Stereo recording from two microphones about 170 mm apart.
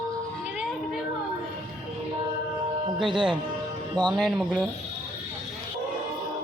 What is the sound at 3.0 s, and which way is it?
Speech, 30° right (ahead or behind).